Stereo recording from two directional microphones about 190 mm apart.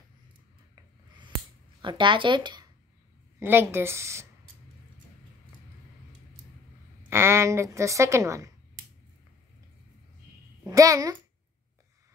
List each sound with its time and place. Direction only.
1.8 s speech: 25° right (ahead or behind)
3.3 s a woman's voice: 10° right (ahead or behind)
7.1 s a woman's voice: 15° right (ahead or behind)
10.7 s speech: 20° right (ahead or behind)